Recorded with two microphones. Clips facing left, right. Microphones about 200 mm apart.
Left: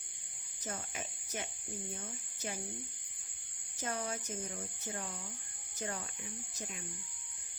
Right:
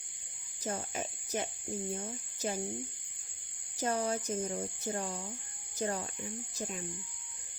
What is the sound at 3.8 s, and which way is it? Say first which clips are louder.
Speech: right 7 dB; 35° right (ahead or behind).